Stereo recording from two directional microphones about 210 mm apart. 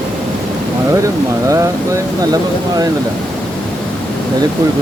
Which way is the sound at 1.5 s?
15° right (ahead or behind).